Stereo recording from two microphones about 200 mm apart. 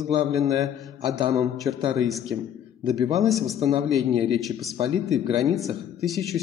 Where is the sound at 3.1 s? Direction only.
Centre (ahead or behind).